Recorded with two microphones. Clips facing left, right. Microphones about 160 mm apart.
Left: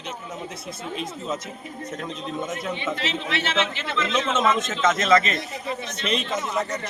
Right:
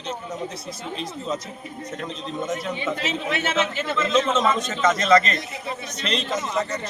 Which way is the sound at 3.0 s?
50° right (ahead or behind).